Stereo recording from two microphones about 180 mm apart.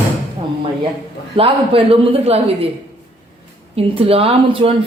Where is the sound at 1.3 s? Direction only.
30° right (ahead or behind).